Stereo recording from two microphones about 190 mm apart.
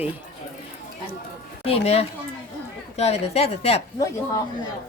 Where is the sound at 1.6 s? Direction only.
30° left (ahead or behind).